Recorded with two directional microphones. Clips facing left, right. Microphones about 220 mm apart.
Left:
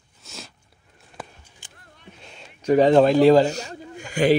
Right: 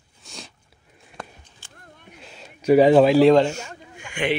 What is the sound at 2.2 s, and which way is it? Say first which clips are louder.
A man's voice: right 2 dB; centre (ahead or behind).